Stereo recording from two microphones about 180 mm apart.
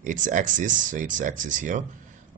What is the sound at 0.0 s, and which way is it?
A man's voice, 45° right (ahead or behind).